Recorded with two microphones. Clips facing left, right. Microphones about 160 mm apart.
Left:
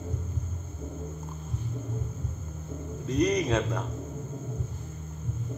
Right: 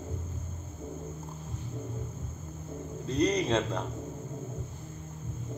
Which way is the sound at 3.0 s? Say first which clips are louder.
Left 2 dB; 30° right (ahead or behind).